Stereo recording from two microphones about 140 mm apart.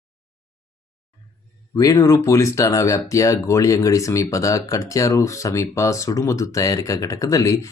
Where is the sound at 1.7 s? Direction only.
25° left (ahead or behind).